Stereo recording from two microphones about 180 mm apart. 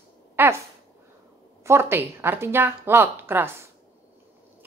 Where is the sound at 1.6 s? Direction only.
15° right (ahead or behind).